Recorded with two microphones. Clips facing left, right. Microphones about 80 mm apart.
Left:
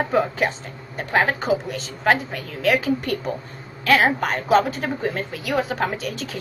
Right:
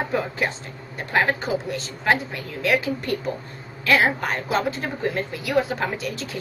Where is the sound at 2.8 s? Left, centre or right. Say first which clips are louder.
Left 3 dB; left.